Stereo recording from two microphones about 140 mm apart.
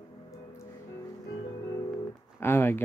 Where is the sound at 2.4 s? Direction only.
15° left (ahead or behind).